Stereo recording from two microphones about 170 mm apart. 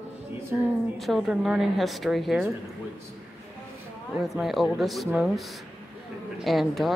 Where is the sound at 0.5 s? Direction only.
10° right (ahead or behind).